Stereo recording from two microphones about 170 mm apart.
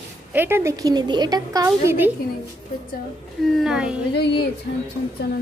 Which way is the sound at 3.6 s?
5° right (ahead or behind).